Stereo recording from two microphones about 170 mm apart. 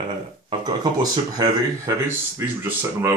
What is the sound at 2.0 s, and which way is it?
Speech, 15° right (ahead or behind).